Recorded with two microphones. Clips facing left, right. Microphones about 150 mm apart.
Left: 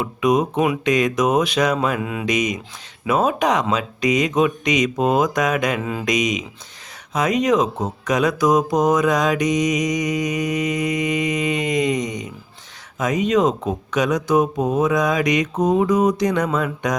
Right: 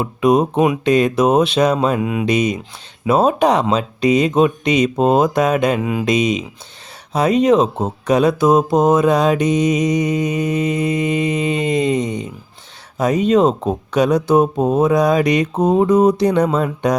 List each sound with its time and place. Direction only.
0.0 s speech: 30° right (ahead or behind)
2.2 s speech: 30° right (ahead or behind)
5.8 s speech: 15° right (ahead or behind)
6.1 s speech: 30° right (ahead or behind)